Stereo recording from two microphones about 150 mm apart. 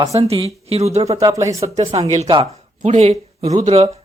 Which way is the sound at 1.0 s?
20° right (ahead or behind).